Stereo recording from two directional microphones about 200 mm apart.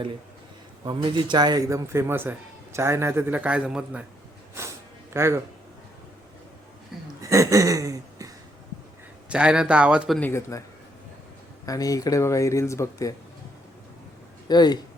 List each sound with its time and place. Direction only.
0.9 s a man's voice: 20° right (ahead or behind); by 4.0 s 5° right (ahead or behind)
5.1 s a man's voice: 15° right (ahead or behind)
7.2 s a sound: 15° right (ahead or behind)
9.3 s speech: 5° right (ahead or behind)
10.2 s speech: 10° left (ahead or behind)
11.6 s speech: 15° left (ahead or behind)
14.4 s speech: 20° left (ahead or behind)